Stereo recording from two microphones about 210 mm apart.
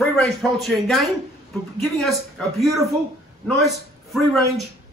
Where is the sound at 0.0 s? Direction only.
Centre (ahead or behind).